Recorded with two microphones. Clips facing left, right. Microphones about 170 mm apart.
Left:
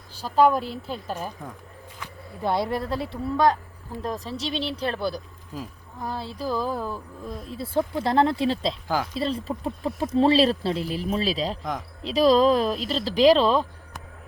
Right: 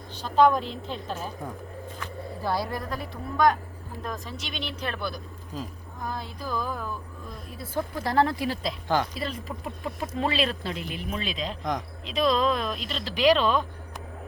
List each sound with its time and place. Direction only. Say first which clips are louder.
0.2 s a woman's voice: left 1 dB; 10° left (ahead or behind)
2.0 s speech: left 2 dB; 20° left (ahead or behind)